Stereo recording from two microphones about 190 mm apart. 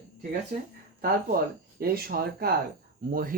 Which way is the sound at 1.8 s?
55° right (ahead or behind).